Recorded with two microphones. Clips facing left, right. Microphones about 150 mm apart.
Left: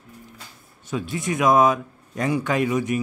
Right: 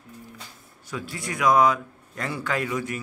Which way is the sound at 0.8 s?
20° left (ahead or behind).